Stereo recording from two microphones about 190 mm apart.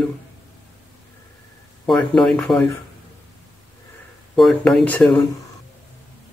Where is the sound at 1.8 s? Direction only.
5° left (ahead or behind).